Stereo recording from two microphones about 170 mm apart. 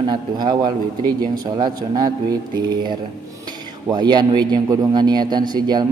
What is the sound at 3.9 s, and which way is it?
Speech, 25° right (ahead or behind).